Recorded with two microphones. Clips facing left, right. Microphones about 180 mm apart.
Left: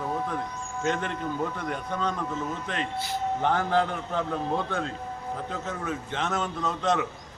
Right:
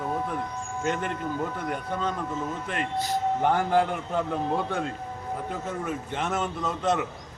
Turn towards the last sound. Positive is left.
turn(degrees=-10)  # may be behind; listen again after turning